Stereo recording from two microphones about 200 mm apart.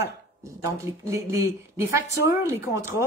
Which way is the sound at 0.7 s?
15° right (ahead or behind).